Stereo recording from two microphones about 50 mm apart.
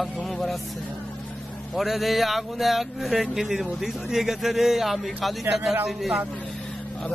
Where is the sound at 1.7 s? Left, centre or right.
Centre.